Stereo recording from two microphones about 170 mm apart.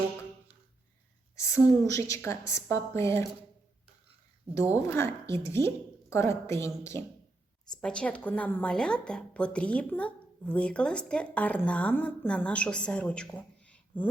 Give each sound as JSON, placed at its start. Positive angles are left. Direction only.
{"t": 1.5, "sound": "a woman's voice", "side_deg": 15}
{"t": 4.7, "sound": "a woman's voice", "side_deg": 15}
{"t": 7.7, "sound": "a woman's voice", "side_deg": 5}